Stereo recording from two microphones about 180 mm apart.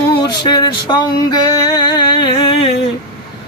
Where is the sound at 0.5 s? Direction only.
25° left (ahead or behind).